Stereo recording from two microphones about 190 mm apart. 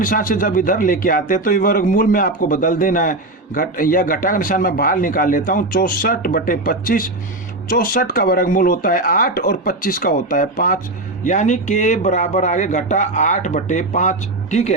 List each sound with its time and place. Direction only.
0.0 s a man's voice: 45° left (ahead or behind)